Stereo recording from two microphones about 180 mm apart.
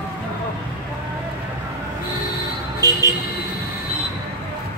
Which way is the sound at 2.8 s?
20° right (ahead or behind).